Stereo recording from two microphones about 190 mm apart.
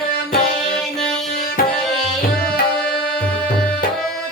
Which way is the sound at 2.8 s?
5° left (ahead or behind).